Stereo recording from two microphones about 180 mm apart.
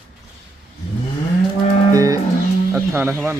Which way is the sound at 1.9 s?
20° right (ahead or behind).